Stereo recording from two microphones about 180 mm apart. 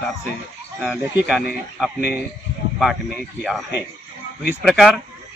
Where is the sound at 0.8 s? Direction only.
Centre (ahead or behind).